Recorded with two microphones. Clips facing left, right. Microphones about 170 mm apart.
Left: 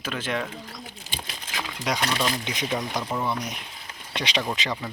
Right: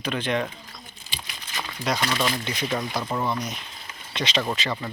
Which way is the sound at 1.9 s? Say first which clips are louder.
Right 1 dB; 15° left (ahead or behind).